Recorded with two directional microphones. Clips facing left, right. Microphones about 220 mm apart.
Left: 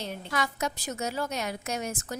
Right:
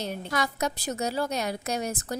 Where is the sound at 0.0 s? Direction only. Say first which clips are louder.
Right 2 dB; 40° right (ahead or behind).